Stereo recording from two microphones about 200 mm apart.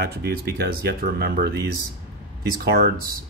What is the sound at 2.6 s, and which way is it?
Speech, 50° right (ahead or behind).